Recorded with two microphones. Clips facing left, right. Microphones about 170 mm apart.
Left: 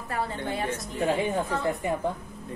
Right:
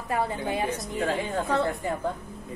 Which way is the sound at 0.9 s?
15° left (ahead or behind).